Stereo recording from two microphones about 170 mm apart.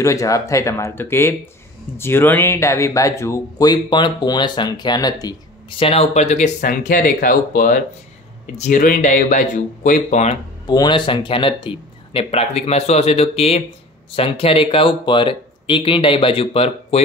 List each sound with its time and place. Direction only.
0.0 s speech: 20° left (ahead or behind); by 10.4 s 40° left (ahead or behind)
10.7 s speech: 25° left (ahead or behind)